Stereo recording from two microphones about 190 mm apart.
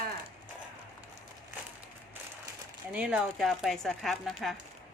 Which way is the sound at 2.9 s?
5° right (ahead or behind).